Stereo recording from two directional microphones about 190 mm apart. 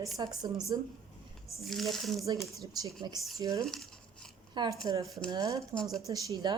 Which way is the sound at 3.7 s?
5° left (ahead or behind).